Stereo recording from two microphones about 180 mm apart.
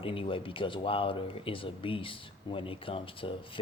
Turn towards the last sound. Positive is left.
turn(degrees=30)  # may be behind; listen again after turning